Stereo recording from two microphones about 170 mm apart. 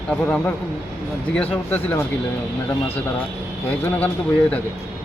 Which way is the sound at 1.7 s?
10° left (ahead or behind).